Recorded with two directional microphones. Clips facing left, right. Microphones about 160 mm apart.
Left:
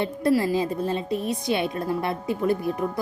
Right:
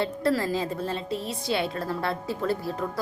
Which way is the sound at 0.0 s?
15° left (ahead or behind).